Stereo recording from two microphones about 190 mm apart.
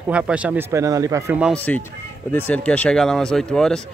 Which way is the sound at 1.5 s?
10° left (ahead or behind).